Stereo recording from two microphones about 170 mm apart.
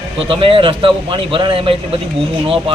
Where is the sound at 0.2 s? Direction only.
30° right (ahead or behind).